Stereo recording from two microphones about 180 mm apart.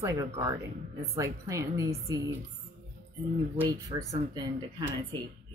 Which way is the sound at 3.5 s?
20° right (ahead or behind).